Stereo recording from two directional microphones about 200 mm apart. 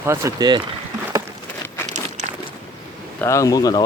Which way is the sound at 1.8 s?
35° right (ahead or behind).